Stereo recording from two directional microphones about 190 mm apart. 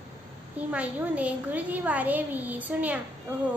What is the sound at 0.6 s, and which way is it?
A woman's voice, 10° right (ahead or behind).